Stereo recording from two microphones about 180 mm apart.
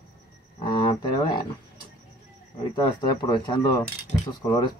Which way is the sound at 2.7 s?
25° left (ahead or behind).